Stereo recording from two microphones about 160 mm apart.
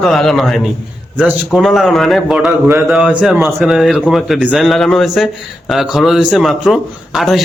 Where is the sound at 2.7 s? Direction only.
15° right (ahead or behind).